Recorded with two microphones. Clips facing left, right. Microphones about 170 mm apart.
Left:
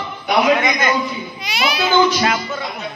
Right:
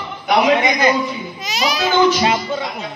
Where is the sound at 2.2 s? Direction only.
25° right (ahead or behind).